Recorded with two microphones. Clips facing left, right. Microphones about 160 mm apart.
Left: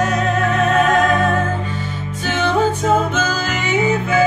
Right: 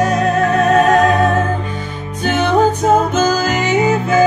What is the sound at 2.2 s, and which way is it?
Music, 45° right (ahead or behind).